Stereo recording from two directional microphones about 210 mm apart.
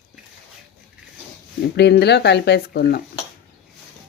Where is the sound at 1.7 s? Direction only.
50° left (ahead or behind).